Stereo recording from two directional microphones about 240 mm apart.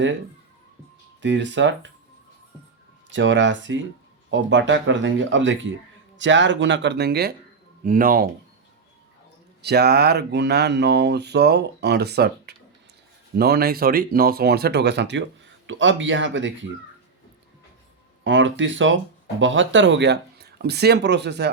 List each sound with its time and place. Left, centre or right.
1.2 s speech: right
3.1 s speech: right
9.6 s speech: right
18.2 s speech: right